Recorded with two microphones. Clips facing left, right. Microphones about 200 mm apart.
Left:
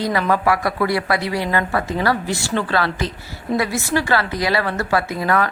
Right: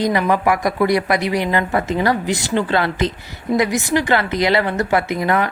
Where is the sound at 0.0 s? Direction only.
15° right (ahead or behind).